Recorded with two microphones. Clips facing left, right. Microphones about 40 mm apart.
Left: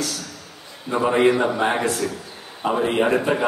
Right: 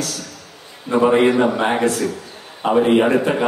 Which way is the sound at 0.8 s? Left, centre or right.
Centre.